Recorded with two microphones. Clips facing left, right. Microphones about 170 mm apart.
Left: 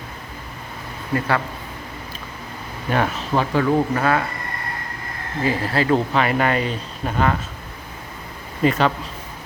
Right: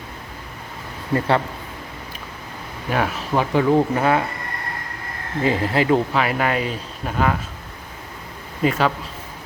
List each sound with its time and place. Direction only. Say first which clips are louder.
2.9 s speech: left 1 dB; 5° right (ahead or behind)
5.4 s speech: right 2 dB; 20° right (ahead or behind)
6.1 s speech: left 1 dB; 5° right (ahead or behind)
8.6 s speech: left 1 dB; 5° right (ahead or behind)